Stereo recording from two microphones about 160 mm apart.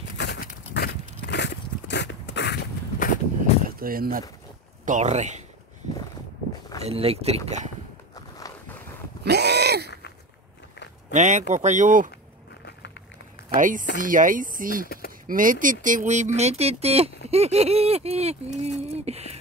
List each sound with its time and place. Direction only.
0.2 s a sound: 90° left; by 3.2 s 75° left (ahead or behind)
3.6 s speech: 65° right (ahead or behind)
4.8 s speech: 50° right (ahead or behind)
6.8 s speech: 40° right (ahead or behind)
9.2 s a sound: 90° right
11.1 s speech: 50° right (ahead or behind)
13.6 s speech: 55° right (ahead or behind)